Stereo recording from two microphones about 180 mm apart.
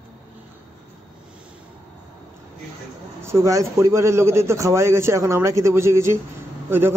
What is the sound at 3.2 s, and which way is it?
A man's voice, 15° right (ahead or behind).